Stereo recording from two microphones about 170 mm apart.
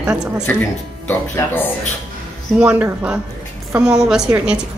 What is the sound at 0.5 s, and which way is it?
Speech, 10° left (ahead or behind).